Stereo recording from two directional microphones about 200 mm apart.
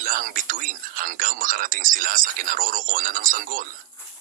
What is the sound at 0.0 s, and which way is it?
Speech, 45° right (ahead or behind).